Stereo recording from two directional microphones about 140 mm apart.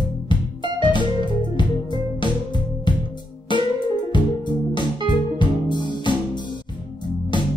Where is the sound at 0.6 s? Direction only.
35° right (ahead or behind).